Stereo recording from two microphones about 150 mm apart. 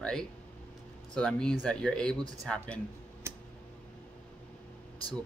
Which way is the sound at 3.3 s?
15° right (ahead or behind).